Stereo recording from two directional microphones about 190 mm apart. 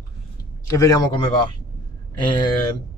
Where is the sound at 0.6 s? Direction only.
15° left (ahead or behind).